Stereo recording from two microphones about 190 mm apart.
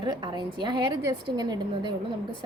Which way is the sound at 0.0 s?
25° right (ahead or behind).